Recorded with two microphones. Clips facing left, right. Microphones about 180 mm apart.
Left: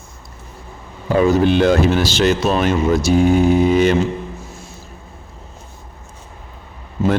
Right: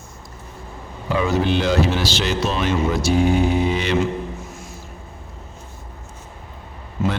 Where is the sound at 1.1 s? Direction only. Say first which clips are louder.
Left 6 dB; 45° left (ahead or behind).